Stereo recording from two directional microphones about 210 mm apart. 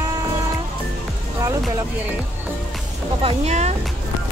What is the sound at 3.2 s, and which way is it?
Speech, 30° right (ahead or behind).